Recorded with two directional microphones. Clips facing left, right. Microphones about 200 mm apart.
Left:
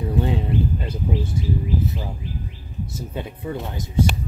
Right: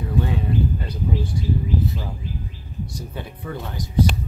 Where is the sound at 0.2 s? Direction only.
25° left (ahead or behind).